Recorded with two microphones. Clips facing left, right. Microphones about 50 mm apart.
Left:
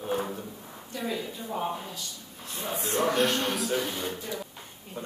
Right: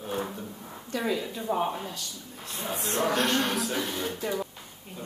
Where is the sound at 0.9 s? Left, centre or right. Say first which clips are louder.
Right 4 dB; right.